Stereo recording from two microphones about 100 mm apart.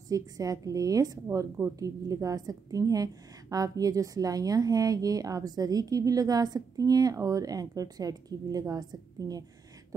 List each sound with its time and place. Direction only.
0.1 s a woman's voice: 35° right (ahead or behind)